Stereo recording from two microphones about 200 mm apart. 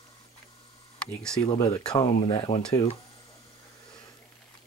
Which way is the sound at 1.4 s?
20° left (ahead or behind).